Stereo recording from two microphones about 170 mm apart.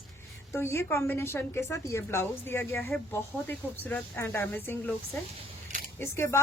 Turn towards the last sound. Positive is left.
turn(degrees=15)  # may be behind; listen again after turning